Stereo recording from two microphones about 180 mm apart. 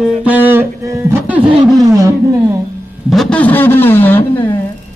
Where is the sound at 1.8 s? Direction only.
20° right (ahead or behind).